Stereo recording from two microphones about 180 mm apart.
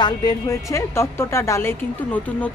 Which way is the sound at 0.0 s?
20° left (ahead or behind).